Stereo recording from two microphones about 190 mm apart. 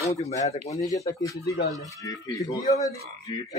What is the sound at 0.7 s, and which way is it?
Speech, 15° left (ahead or behind).